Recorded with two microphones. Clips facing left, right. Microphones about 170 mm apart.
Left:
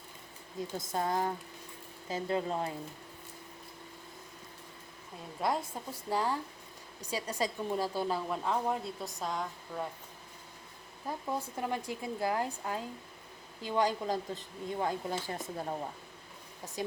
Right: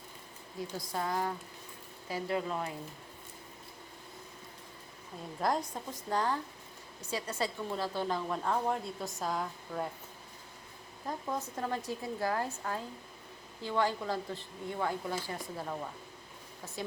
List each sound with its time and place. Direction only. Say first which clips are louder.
0.8 s speech: left 2 dB; 25° left (ahead or behind)
5.4 s a woman's voice: right 1 dB; 5° left (ahead or behind)
11.3 s speech: left 1 dB; 10° left (ahead or behind)
14.8 s speech: even; 25° left (ahead or behind)